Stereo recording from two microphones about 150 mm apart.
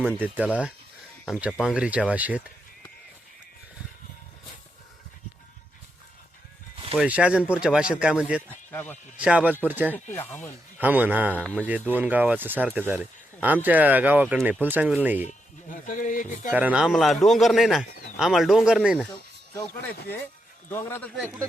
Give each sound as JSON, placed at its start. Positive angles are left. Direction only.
{"t": 0.2, "sound": "speech", "side_deg": -10}
{"t": 6.9, "sound": "speech", "side_deg": -5}
{"t": 8.4, "sound": "speech", "side_deg": 15}
{"t": 9.1, "sound": "speech", "side_deg": -10}
{"t": 9.9, "sound": "speech", "side_deg": 15}
{"t": 10.8, "sound": "speech", "side_deg": -10}
{"t": 15.2, "sound": "speech", "side_deg": 55}
{"t": 16.5, "sound": "speech", "side_deg": -10}
{"t": 20.7, "sound": "speech", "side_deg": 15}